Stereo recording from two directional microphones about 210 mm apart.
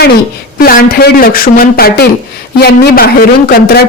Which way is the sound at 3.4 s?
45° left (ahead or behind).